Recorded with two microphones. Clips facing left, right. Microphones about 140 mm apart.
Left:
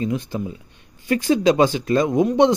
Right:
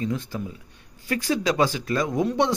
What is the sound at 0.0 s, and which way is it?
A man's voice, 20° left (ahead or behind).